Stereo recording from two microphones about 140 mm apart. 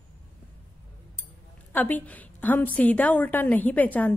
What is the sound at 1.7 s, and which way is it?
A woman's voice, 10° left (ahead or behind).